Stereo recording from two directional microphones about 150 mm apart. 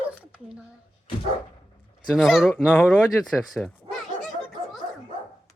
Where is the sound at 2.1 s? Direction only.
Centre (ahead or behind).